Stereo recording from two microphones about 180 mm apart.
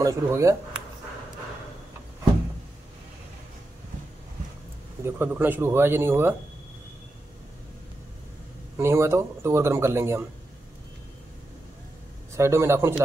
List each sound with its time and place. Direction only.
0.0 s speech: 15° right (ahead or behind)
5.0 s speech: 10° right (ahead or behind)
8.7 s speech: 15° right (ahead or behind)
12.4 s speech: 15° right (ahead or behind)